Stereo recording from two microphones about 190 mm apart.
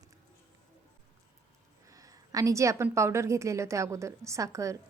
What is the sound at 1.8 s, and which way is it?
A woman's voice, 20° right (ahead or behind).